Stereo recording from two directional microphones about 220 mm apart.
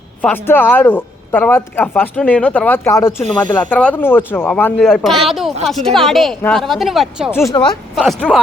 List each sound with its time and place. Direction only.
0.2 s a man's voice: 10° left (ahead or behind)
7.5 s speech: 20° left (ahead or behind)
7.9 s a woman's voice: centre (ahead or behind)